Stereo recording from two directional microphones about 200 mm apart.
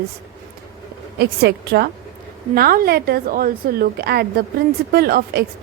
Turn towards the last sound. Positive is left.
turn(degrees=-50)  # may be behind; listen again after turning